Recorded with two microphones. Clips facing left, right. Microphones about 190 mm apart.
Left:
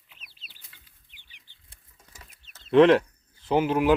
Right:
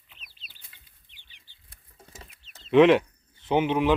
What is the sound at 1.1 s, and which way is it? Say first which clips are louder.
Chicken: left 1 dB; 15° left (ahead or behind).